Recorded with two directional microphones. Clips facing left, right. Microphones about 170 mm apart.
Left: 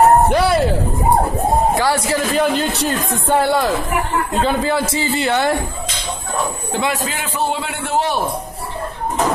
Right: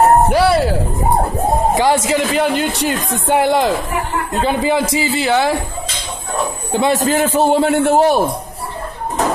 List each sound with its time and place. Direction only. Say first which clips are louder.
0.3 s speech: right 2 dB; 5° right (ahead or behind)
1.8 s a man's voice: right 3 dB; 20° right (ahead or behind); by 5.6 s centre (ahead or behind)
6.9 s a man's voice: right 8 dB; 45° right (ahead or behind)